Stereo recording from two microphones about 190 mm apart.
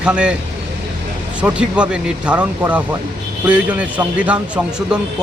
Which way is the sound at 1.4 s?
5° right (ahead or behind).